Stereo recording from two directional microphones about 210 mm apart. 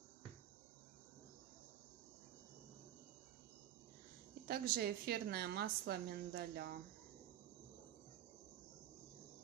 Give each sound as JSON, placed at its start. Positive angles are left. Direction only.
{"t": 4.5, "sound": "a woman's voice", "side_deg": -45}